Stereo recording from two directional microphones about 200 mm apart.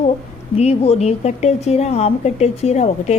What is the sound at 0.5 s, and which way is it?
A woman's voice, 30° left (ahead or behind).